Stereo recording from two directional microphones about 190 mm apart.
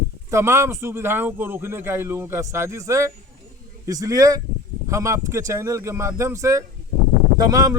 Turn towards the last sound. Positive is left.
turn(degrees=-20)  # may be behind; listen again after turning